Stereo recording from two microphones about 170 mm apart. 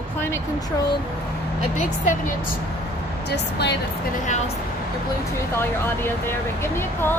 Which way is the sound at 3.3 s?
80° left.